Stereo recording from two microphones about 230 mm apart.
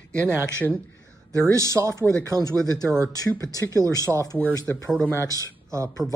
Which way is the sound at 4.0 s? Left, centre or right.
Centre.